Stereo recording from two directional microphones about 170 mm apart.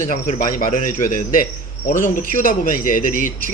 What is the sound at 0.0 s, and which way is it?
Speech, 50° left (ahead or behind).